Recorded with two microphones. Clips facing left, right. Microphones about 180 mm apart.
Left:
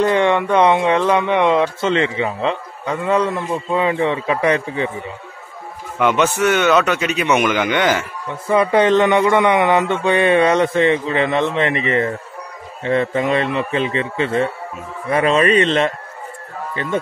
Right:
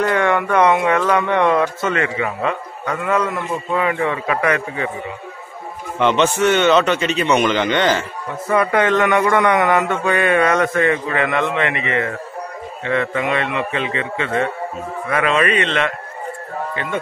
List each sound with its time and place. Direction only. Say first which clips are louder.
0.0 s speech: left 2 dB; 25° left (ahead or behind)
5.9 s a man's voice: even; 5° left (ahead or behind)
8.7 s a man's voice: left 4 dB; 30° left (ahead or behind)